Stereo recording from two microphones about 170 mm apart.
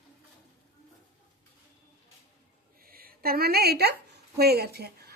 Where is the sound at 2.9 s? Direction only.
60° right (ahead or behind).